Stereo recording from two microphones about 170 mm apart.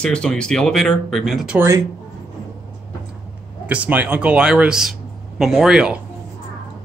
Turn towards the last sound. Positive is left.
turn(degrees=-5)  # may be behind; listen again after turning